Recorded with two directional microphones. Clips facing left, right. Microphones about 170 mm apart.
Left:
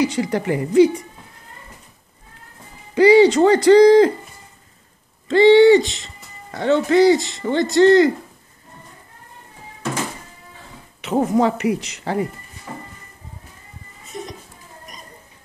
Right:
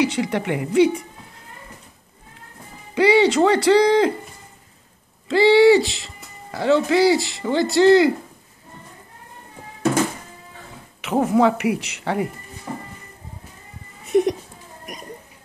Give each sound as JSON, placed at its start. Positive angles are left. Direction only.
{"t": 0.0, "sound": "speech", "side_deg": 0}
{"t": 2.9, "sound": "speech", "side_deg": 0}
{"t": 5.3, "sound": "speech", "side_deg": -5}
{"t": 11.1, "sound": "speech", "side_deg": 0}
{"t": 12.7, "sound": "music", "side_deg": -25}
{"t": 14.1, "sound": "cat", "side_deg": -65}